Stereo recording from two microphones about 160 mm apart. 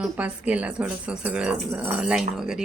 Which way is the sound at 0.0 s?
10° right (ahead or behind).